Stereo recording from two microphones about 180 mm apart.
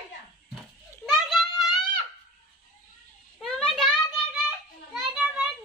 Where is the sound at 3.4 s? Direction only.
Centre (ahead or behind).